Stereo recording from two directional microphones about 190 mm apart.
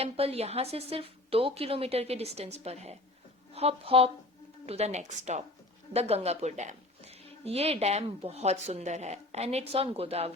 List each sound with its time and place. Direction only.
0.0 s a woman's voice: 30° right (ahead or behind)